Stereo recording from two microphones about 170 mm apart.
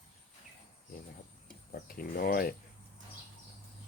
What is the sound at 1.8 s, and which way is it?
Speech, 60° left (ahead or behind).